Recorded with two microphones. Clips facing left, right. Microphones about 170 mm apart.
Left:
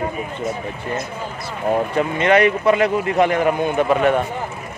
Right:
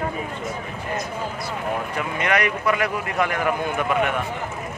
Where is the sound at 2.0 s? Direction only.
30° left (ahead or behind).